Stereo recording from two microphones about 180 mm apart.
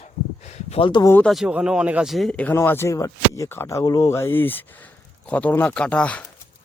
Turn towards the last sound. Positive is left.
turn(degrees=5)  # may be behind; listen again after turning